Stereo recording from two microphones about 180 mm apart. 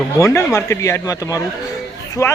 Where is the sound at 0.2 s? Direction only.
15° left (ahead or behind).